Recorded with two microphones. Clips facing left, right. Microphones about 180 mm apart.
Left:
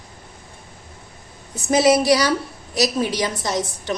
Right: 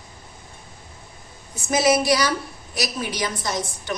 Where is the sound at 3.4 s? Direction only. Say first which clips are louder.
Left 4 dB; 35° left (ahead or behind).